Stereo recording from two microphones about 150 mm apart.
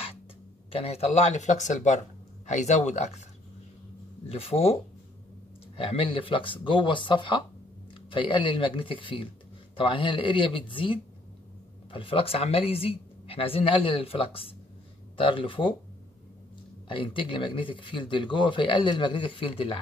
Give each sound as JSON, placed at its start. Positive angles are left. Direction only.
{"t": 0.7, "sound": "speech", "side_deg": 40}
{"t": 4.3, "sound": "speech", "side_deg": 40}
{"t": 5.8, "sound": "speech", "side_deg": 35}
{"t": 16.9, "sound": "speech", "side_deg": 35}